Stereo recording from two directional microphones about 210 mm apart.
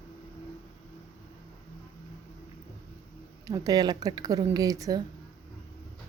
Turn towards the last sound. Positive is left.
turn(degrees=-15)  # may be behind; listen again after turning